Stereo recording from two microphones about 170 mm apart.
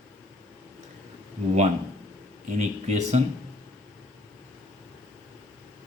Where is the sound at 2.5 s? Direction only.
40° right (ahead or behind).